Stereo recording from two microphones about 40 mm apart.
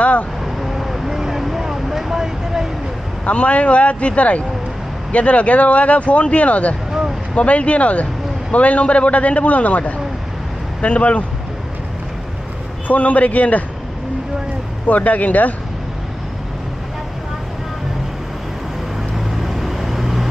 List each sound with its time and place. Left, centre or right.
0.6 s vehicle: centre
3.3 s a man's voice: left
12.8 s a man's voice: left
14.9 s a man's voice: left
19.1 s vehicle: centre